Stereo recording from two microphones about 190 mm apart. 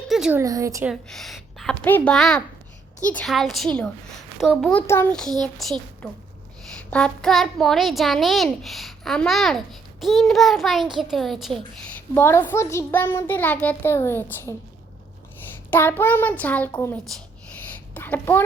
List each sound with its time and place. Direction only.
0.1 s a sound: 5° right (ahead or behind)
0.4 s speech: 15° right (ahead or behind)
0.9 s a woman's voice: centre (ahead or behind)
6.9 s a child's voice: 5° left (ahead or behind)
11.9 s a child's voice: 10° left (ahead or behind)
15.7 s a child's voice: 10° left (ahead or behind)
17.7 s a sound: 10° left (ahead or behind)